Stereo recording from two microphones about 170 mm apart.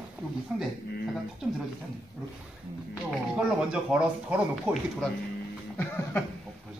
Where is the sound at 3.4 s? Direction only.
5° right (ahead or behind).